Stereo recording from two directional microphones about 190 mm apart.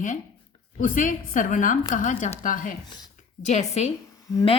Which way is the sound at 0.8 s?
45° left (ahead or behind).